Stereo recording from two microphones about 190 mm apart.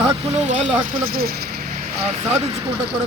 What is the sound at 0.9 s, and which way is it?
Speech, 50° right (ahead or behind).